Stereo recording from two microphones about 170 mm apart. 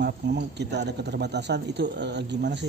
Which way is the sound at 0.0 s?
80° right.